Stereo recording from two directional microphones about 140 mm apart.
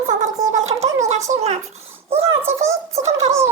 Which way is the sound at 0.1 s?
60° right (ahead or behind).